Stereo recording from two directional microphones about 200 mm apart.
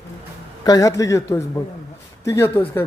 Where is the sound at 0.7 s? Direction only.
20° left (ahead or behind).